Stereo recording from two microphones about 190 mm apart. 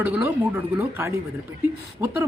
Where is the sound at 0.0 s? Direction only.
10° right (ahead or behind).